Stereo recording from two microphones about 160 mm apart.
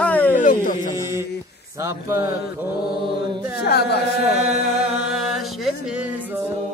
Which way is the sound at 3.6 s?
85° left.